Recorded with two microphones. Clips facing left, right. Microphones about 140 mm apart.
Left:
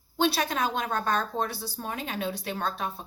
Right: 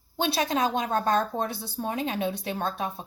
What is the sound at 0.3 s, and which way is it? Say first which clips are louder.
A woman's voice: right 3 dB; 20° right (ahead or behind).